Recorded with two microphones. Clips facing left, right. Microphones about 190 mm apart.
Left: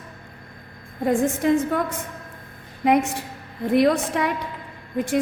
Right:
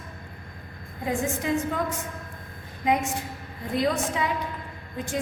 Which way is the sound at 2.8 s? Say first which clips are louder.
Left 5 dB; 65° left (ahead or behind).